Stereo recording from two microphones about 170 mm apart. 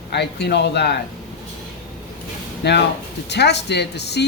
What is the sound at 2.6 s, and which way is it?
Speech, 75° left (ahead or behind).